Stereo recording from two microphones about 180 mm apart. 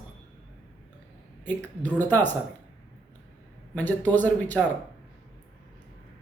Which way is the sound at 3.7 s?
10° left (ahead or behind).